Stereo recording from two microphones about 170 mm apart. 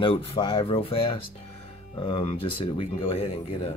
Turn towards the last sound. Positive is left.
turn(degrees=35)  # may be behind; listen again after turning